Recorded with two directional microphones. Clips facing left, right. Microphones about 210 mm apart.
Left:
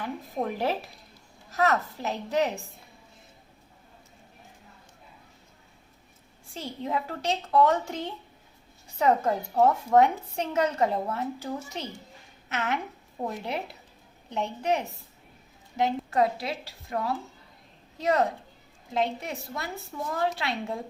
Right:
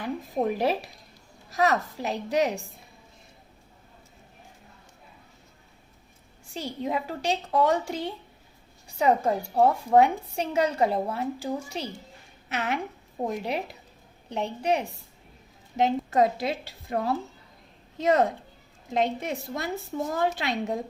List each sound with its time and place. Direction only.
0.4 s a woman's voice: 15° right (ahead or behind)
6.5 s a woman's voice: 15° right (ahead or behind)